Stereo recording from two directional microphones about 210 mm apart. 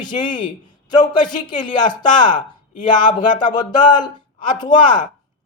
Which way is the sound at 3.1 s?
20° left (ahead or behind).